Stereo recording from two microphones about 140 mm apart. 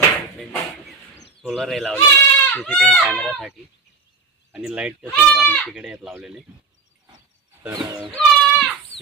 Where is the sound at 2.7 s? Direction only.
5° left (ahead or behind).